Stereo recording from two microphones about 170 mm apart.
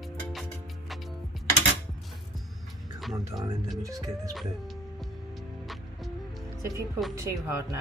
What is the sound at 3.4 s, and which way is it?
Speech, 20° right (ahead or behind).